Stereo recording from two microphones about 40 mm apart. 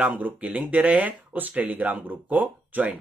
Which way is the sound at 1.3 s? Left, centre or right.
Right.